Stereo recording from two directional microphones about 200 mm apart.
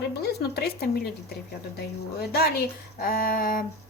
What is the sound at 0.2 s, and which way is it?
A woman's voice, 55° left (ahead or behind).